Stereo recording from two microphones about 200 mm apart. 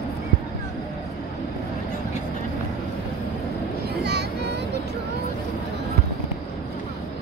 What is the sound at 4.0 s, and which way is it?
Vehicle, 55° right (ahead or behind).